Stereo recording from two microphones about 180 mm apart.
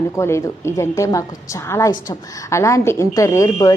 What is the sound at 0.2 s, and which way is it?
A woman's voice, 15° left (ahead or behind).